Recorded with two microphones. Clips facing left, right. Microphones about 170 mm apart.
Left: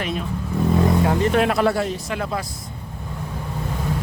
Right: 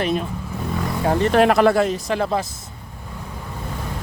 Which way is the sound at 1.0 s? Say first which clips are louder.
Right 3 dB; 40° right (ahead or behind).